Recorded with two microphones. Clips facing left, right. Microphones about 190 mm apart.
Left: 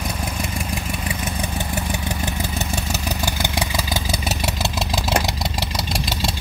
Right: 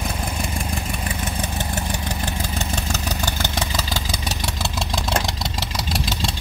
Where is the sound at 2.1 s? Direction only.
10° left (ahead or behind).